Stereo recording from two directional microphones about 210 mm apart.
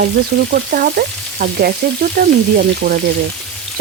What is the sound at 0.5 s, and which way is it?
Frying, 45° right (ahead or behind).